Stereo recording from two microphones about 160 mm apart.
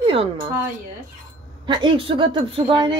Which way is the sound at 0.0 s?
35° right (ahead or behind).